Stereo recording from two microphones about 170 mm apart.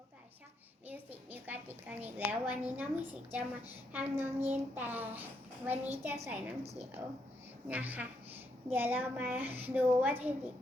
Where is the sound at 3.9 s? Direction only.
10° right (ahead or behind).